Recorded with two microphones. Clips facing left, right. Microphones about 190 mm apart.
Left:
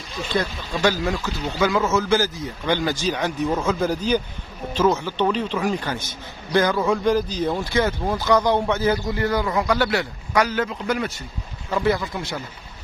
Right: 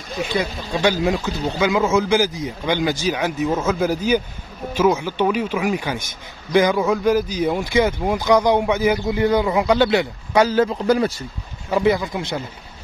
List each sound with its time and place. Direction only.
0.3 s speech: 15° right (ahead or behind); by 11.2 s 35° right (ahead or behind)
11.7 s speech: 15° right (ahead or behind)